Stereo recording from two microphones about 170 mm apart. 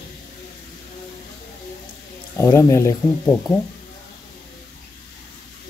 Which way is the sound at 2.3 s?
15° left (ahead or behind).